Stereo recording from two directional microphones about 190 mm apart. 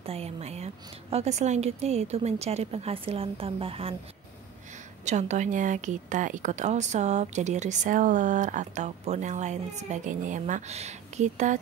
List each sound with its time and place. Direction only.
0.0 s a woman's voice: 30° right (ahead or behind)
5.0 s a woman's voice: 40° right (ahead or behind)